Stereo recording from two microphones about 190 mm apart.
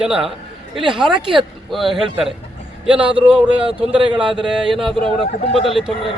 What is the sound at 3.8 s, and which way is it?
Speech, 25° right (ahead or behind).